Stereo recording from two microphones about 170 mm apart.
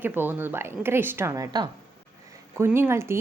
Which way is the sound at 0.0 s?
10° right (ahead or behind).